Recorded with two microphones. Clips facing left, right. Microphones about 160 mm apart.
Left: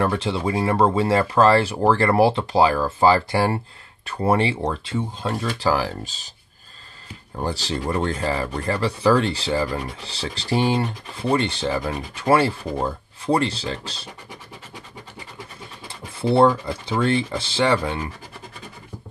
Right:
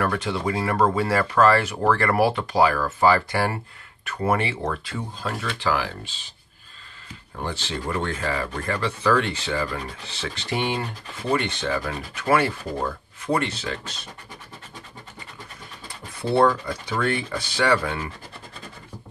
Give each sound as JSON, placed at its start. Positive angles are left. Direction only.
{"t": 0.0, "sound": "speech", "side_deg": 25}
{"t": 5.6, "sound": "speech", "side_deg": 35}
{"t": 7.4, "sound": "speech", "side_deg": 35}
{"t": 15.9, "sound": "speech", "side_deg": 30}